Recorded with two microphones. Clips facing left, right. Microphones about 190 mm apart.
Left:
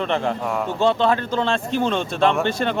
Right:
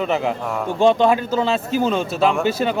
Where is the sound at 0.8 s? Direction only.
15° right (ahead or behind).